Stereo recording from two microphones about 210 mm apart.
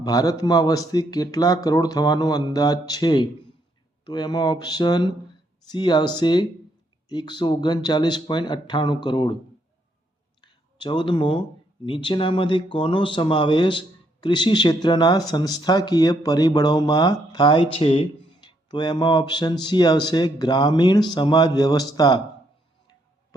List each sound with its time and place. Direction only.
0.0 s speech: 15° left (ahead or behind)
10.4 s speech: 20° left (ahead or behind)